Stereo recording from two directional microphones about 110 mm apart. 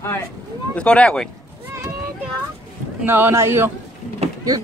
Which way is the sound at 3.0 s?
20° right (ahead or behind).